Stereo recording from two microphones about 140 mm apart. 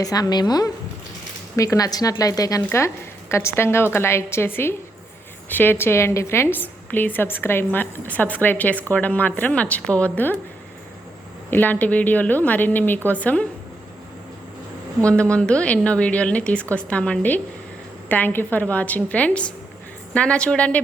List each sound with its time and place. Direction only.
0.0 s a woman's voice: 25° left (ahead or behind); by 10.3 s 10° left (ahead or behind)
11.5 s a woman's voice: 10° left (ahead or behind)
15.0 s a woman's voice: 10° left (ahead or behind)